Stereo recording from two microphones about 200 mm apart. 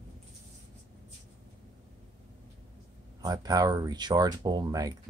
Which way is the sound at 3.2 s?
20° right (ahead or behind).